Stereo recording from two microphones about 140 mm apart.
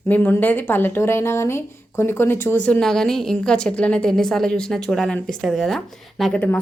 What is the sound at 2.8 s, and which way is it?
A woman's voice, 5° left (ahead or behind).